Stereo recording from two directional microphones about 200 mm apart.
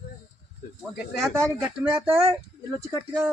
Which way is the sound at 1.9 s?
10° right (ahead or behind).